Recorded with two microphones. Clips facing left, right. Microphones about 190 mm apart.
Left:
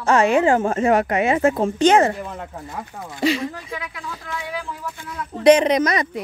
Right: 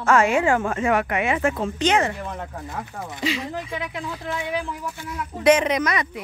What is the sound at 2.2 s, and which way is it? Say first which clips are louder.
Speech: even; 10° left (ahead or behind).